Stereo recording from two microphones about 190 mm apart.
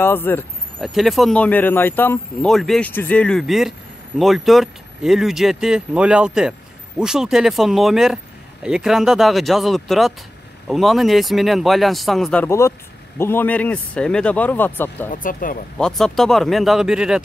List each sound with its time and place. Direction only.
0.0 s speech: 10° left (ahead or behind)
0.7 s speech: centre (ahead or behind)
15.0 s speech: 45° left (ahead or behind)
15.8 s speech: centre (ahead or behind)